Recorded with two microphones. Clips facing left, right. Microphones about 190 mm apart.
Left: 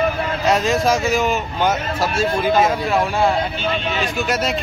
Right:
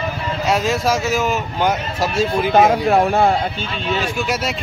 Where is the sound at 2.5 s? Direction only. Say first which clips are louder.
Right 6 dB; 55° right (ahead or behind).